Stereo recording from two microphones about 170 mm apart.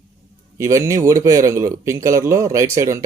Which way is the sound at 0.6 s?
15° right (ahead or behind).